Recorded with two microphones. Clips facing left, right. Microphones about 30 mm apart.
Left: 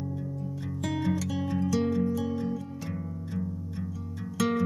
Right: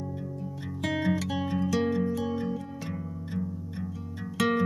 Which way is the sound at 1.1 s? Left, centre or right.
Right.